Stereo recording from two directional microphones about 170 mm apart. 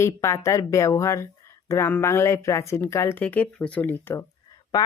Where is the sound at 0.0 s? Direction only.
15° left (ahead or behind).